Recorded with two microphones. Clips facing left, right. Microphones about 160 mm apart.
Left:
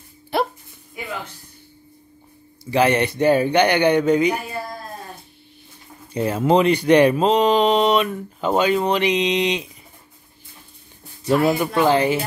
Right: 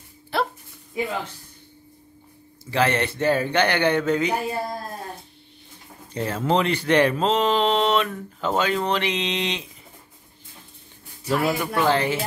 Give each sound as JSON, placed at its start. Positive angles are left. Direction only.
{"t": 0.3, "sound": "music", "side_deg": 15}
{"t": 2.6, "sound": "speech", "side_deg": 15}
{"t": 6.1, "sound": "speech", "side_deg": 15}
{"t": 11.2, "sound": "speech", "side_deg": 15}